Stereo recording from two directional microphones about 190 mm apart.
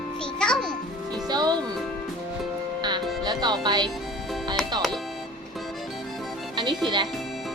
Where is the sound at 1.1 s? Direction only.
20° right (ahead or behind).